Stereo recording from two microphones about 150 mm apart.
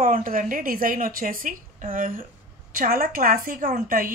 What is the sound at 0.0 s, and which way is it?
A woman's voice, 65° right (ahead or behind).